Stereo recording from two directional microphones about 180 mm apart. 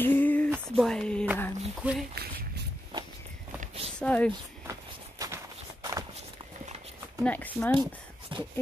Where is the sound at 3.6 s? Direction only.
35° right (ahead or behind).